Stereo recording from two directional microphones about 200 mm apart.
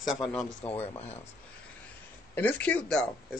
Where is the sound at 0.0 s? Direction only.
Centre (ahead or behind).